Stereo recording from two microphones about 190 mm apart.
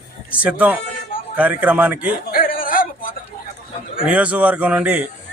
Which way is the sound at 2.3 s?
50° left (ahead or behind).